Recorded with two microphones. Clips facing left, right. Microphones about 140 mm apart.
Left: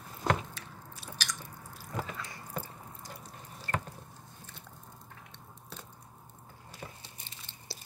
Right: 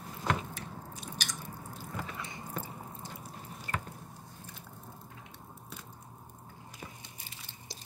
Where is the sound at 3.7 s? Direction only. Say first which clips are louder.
Left 3 dB; 15° right (ahead or behind).